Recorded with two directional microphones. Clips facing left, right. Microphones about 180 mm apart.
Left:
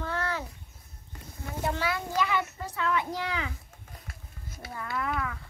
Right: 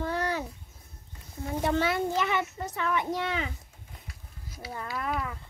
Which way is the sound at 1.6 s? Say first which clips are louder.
Right 4 dB; 25° right (ahead or behind).